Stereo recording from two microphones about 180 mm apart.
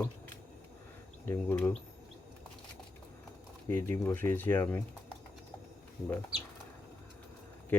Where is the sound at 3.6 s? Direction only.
15° left (ahead or behind).